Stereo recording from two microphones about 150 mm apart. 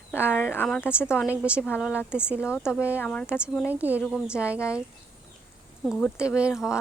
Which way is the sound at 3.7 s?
10° right (ahead or behind).